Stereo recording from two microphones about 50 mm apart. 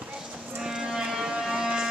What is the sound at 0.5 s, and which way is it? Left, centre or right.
Music, centre.